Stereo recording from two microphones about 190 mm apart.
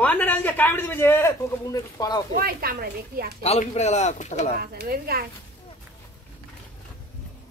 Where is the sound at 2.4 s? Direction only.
50° right (ahead or behind).